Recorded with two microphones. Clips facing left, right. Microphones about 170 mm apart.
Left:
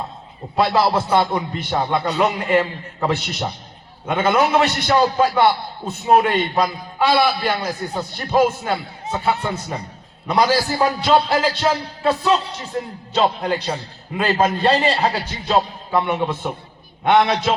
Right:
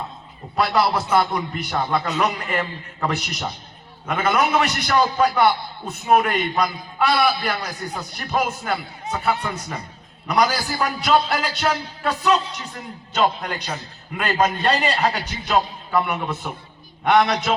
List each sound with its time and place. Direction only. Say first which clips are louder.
0.5 s a man's voice: left 3 dB; 25° left (ahead or behind)